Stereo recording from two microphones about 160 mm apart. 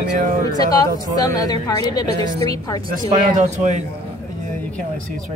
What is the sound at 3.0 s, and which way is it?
Speech, 50° right (ahead or behind).